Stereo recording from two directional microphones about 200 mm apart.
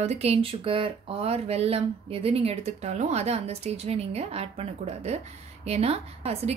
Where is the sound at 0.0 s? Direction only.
30° right (ahead or behind).